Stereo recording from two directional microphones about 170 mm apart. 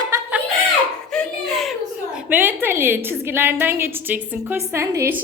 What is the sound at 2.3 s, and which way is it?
A woman's voice, 10° right (ahead or behind).